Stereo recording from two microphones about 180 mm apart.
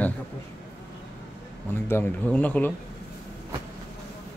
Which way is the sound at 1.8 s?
10° left (ahead or behind).